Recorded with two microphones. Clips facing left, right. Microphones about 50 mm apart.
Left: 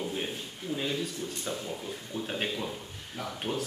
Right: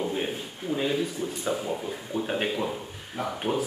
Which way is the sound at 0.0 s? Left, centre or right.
Centre.